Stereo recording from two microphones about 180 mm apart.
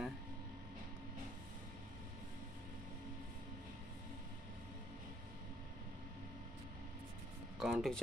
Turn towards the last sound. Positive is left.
turn(degrees=0)  # may be behind; listen again after turning